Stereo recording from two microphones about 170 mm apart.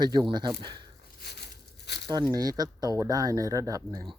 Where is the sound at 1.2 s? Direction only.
75° left (ahead or behind).